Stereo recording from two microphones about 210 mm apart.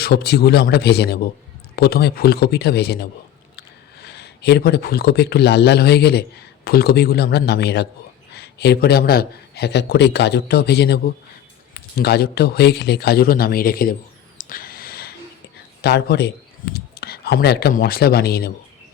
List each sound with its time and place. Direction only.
0.0 s a man's voice: 50° left (ahead or behind)
14.3 s a sound: 40° left (ahead or behind)
15.8 s a man's voice: 50° left (ahead or behind)